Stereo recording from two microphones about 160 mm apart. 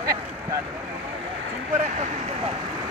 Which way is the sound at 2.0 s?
45° right (ahead or behind).